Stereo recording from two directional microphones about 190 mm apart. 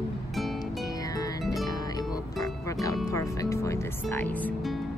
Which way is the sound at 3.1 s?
15° left (ahead or behind).